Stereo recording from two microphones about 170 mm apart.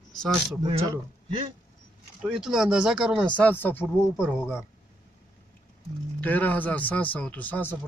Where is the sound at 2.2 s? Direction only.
5° right (ahead or behind).